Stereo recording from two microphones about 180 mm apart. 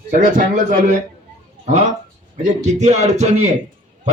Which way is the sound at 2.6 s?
40° right (ahead or behind).